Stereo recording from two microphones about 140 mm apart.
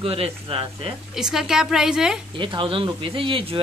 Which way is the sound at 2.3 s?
35° right (ahead or behind).